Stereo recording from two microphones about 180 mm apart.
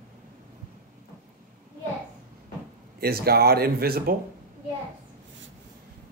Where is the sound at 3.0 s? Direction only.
60° right (ahead or behind).